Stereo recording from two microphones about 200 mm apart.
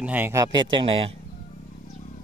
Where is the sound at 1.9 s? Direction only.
35° left (ahead or behind).